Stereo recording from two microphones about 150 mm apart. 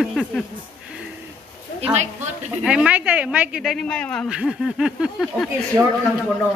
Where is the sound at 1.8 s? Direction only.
45° right (ahead or behind).